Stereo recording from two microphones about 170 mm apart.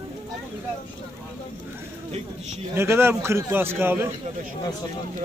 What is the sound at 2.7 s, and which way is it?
A man's voice, 15° right (ahead or behind).